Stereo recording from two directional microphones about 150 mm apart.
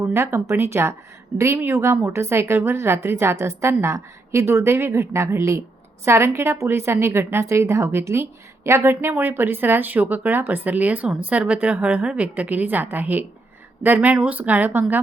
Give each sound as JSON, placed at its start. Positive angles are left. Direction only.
{"t": 0.0, "sound": "a woman's voice", "side_deg": -20}